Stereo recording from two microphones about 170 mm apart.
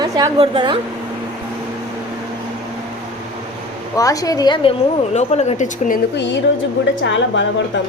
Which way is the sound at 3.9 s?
20° left (ahead or behind).